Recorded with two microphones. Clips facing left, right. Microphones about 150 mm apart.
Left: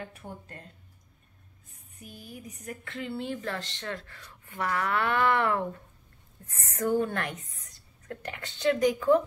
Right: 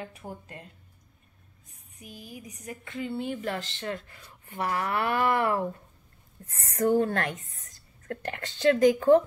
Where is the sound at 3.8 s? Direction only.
25° right (ahead or behind).